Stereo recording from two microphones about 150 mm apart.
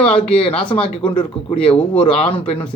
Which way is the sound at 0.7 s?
35° left (ahead or behind).